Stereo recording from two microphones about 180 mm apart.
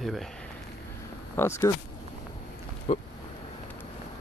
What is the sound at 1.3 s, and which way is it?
Speech, 15° left (ahead or behind).